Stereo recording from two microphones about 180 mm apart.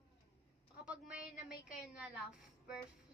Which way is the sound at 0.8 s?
5° right (ahead or behind).